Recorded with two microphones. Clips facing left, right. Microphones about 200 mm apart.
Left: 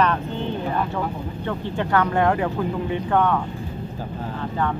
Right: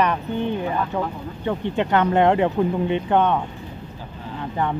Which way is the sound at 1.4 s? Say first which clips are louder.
Right 4 dB; 20° right (ahead or behind).